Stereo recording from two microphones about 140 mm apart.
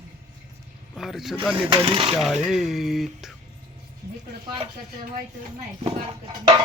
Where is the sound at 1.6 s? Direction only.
40° right (ahead or behind).